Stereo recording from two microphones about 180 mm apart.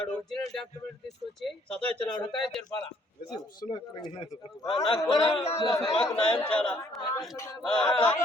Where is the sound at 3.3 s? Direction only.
25° left (ahead or behind).